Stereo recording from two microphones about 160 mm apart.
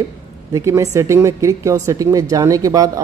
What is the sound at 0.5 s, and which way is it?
Speech, 20° right (ahead or behind).